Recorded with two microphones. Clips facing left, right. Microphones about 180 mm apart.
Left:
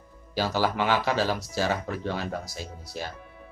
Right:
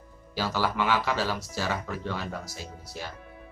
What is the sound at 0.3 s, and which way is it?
Speech, 35° left (ahead or behind).